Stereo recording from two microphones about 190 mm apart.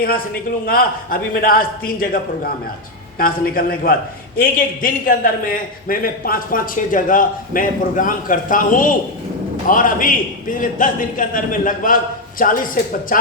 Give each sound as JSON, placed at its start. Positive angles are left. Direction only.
{"t": 0.0, "sound": "a man's voice", "side_deg": 50}